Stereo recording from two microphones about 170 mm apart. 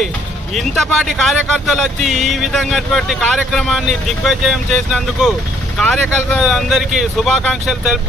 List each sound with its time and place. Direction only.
0.6 s speech: centre (ahead or behind)